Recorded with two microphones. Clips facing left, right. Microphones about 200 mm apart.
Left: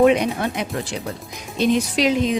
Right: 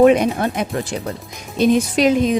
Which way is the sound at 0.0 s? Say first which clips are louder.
Right 3 dB; 45° right (ahead or behind).